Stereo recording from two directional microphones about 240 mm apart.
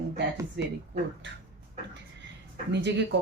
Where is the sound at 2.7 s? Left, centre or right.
Right.